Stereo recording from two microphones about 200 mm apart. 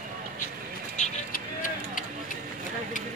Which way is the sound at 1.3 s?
40° left (ahead or behind).